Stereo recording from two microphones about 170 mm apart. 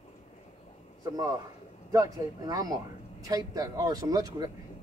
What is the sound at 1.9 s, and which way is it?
Speech, 20° right (ahead or behind).